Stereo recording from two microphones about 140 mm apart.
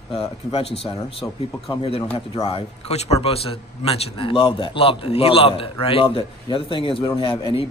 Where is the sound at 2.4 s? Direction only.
45° left (ahead or behind).